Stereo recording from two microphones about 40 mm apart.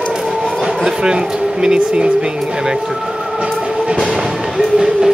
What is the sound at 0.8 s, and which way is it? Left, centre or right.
Speech, centre.